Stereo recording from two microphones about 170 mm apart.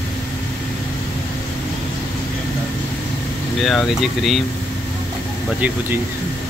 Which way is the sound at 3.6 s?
Centre (ahead or behind).